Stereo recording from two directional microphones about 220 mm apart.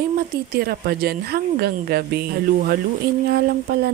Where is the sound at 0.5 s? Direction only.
45° right (ahead or behind).